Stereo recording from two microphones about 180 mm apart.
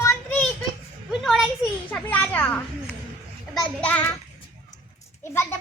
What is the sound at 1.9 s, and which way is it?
Speech, 10° left (ahead or behind).